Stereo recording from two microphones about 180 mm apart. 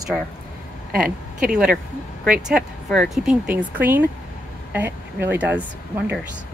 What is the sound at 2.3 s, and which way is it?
Speech, 5° right (ahead or behind).